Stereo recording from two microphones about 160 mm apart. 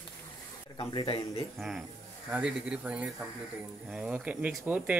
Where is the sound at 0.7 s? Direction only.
35° left (ahead or behind).